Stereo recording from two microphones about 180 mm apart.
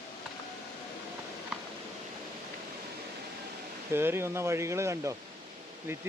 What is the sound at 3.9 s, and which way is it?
Speech, 15° right (ahead or behind).